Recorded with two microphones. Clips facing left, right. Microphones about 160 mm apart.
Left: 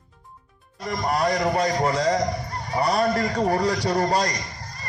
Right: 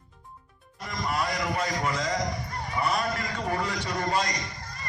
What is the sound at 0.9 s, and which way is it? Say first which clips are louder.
A man's voice: left 7 dB; 40° left (ahead or behind).